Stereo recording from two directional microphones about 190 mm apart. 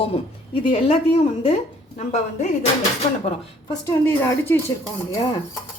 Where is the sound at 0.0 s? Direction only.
30° left (ahead or behind).